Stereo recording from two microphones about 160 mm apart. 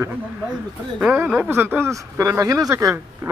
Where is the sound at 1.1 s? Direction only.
10° right (ahead or behind).